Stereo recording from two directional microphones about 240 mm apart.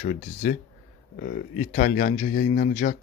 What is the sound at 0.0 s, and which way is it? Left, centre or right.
Speech, left.